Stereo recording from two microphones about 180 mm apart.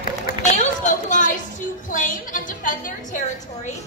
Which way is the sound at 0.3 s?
40° left (ahead or behind).